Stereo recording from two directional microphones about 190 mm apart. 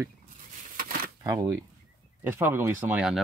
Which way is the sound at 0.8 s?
50° right (ahead or behind).